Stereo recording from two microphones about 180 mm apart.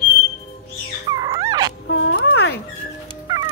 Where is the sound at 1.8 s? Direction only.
85° left; by 2.6 s 70° left (ahead or behind).